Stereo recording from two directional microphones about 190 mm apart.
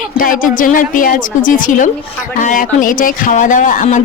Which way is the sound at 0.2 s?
45° left (ahead or behind).